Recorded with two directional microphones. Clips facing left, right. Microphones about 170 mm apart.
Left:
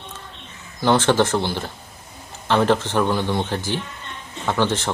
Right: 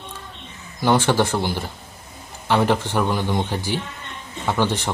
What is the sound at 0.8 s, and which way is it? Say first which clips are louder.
Speech: left 1 dB; 10° right (ahead or behind).